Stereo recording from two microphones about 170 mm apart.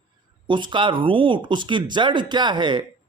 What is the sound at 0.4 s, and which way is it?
Speech, 30° right (ahead or behind).